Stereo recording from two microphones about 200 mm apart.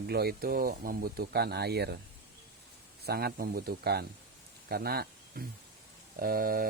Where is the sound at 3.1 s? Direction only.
50° right (ahead or behind).